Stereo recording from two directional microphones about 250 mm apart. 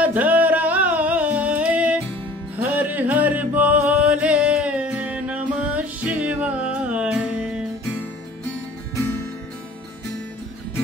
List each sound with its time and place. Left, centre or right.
0.0 s singing: centre
2.5 s music: centre